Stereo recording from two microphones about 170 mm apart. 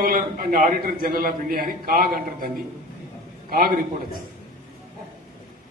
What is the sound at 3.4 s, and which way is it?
Speech, 60° right (ahead or behind).